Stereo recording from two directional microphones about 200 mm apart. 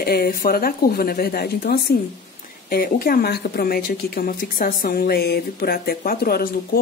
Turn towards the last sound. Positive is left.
turn(degrees=50)  # may be behind; listen again after turning